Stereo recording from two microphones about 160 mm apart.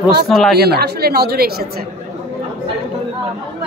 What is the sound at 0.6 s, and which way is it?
Speech, 90° right.